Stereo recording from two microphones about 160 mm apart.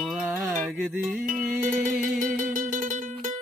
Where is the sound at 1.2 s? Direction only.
55° right (ahead or behind).